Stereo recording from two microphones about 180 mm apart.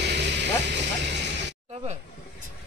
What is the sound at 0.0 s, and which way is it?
Music, 70° right (ahead or behind).